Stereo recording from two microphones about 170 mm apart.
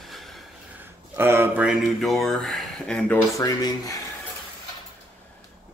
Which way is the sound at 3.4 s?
20° left (ahead or behind).